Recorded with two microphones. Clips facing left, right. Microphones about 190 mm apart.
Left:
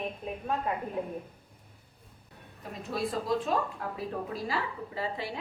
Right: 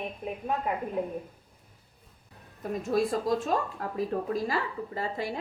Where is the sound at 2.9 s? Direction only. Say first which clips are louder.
Right 6 dB; 45° right (ahead or behind).